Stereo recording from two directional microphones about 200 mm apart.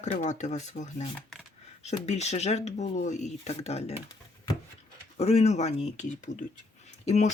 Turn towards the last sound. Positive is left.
turn(degrees=35)  # may be behind; listen again after turning